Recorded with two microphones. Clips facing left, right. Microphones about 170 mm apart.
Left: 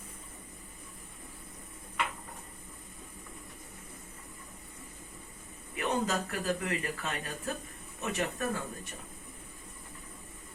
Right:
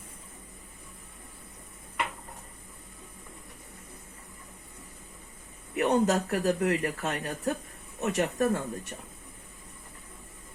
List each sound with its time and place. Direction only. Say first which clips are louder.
5.7 s speech: right 7 dB; 70° right (ahead or behind)